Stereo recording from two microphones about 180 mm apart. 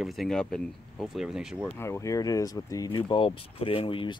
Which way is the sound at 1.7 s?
15° left (ahead or behind).